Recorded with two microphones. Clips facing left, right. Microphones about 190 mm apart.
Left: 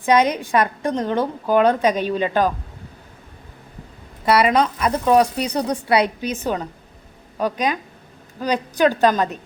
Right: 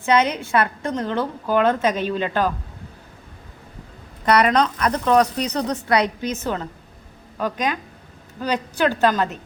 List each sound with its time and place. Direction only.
0.0 s a woman's voice: 15° left (ahead or behind)
4.3 s a woman's voice: 5° left (ahead or behind)